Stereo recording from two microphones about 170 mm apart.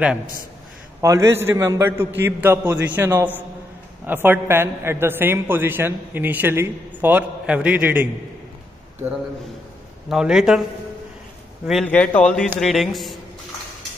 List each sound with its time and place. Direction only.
1.0 s a man's voice: 15° right (ahead or behind)
10.0 s speech: 5° right (ahead or behind)
11.8 s a man's voice: 10° left (ahead or behind)